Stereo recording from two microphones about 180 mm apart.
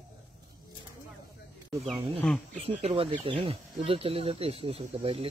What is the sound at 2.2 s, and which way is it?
Speech, 5° left (ahead or behind).